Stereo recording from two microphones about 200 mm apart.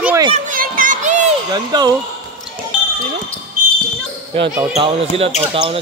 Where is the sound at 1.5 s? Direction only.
20° right (ahead or behind).